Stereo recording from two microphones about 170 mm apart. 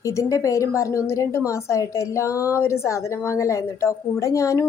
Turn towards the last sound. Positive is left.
turn(degrees=20)  # may be behind; listen again after turning